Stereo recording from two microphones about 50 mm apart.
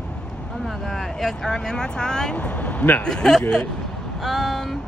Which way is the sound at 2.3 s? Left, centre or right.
Left.